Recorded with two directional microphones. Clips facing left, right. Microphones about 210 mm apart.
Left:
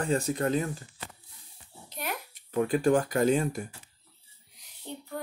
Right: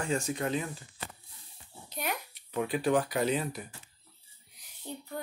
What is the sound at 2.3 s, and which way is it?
Speech, 45° left (ahead or behind).